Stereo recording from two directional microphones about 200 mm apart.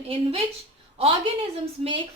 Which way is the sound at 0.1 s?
30° right (ahead or behind).